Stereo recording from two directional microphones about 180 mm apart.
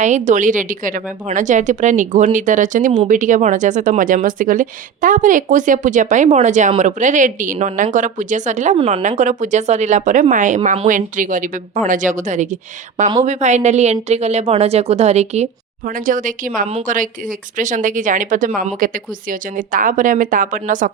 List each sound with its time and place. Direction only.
0.0 s a woman's voice: 40° right (ahead or behind)
15.9 s speech: 50° right (ahead or behind)